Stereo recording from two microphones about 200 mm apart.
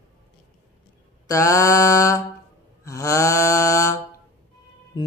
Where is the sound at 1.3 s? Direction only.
15° left (ahead or behind).